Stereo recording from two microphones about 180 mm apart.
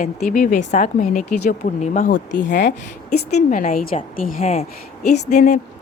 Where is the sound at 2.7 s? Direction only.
40° left (ahead or behind).